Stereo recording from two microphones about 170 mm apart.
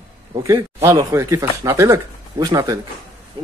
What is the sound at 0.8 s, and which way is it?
Speech, 20° right (ahead or behind).